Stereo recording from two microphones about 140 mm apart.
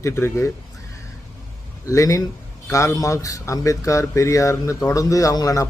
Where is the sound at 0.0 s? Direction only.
20° left (ahead or behind).